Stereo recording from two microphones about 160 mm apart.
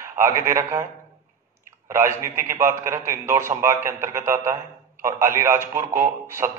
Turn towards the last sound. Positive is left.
turn(degrees=-15)  # may be behind; listen again after turning